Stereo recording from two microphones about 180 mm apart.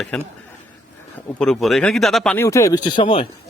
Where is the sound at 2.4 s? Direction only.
15° left (ahead or behind).